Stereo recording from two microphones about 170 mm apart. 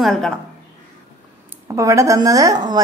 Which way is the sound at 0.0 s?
Centre (ahead or behind).